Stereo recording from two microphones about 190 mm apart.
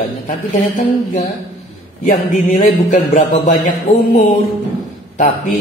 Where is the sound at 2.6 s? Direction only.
40° left (ahead or behind).